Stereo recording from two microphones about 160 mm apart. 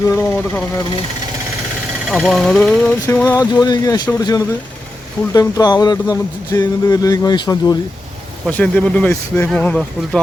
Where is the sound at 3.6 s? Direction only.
25° left (ahead or behind).